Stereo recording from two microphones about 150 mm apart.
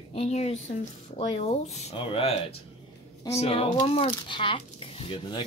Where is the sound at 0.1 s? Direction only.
45° left (ahead or behind).